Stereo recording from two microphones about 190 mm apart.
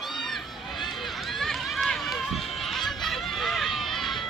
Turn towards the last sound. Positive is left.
turn(degrees=0)  # may be behind; listen again after turning